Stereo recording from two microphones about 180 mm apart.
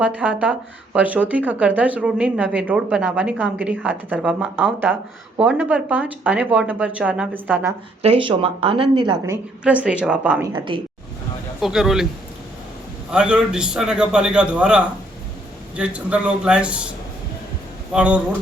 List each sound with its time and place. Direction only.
0.0 s speech: 5° right (ahead or behind)
8.0 s speech: 30° right (ahead or behind)
9.2 s speech: 10° right (ahead or behind)
10.4 s speech: 25° right (ahead or behind)
11.6 s a man's voice: centre (ahead or behind)
13.1 s a man's voice: 5° right (ahead or behind)
17.9 s speech: 5° right (ahead or behind)